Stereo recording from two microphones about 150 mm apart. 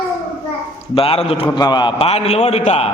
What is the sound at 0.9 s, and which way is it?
A man's voice, 40° left (ahead or behind).